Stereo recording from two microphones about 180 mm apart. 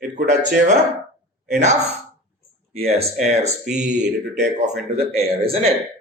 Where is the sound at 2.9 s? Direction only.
35° right (ahead or behind).